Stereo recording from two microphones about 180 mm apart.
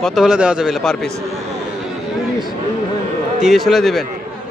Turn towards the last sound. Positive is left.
turn(degrees=0)  # may be behind; listen again after turning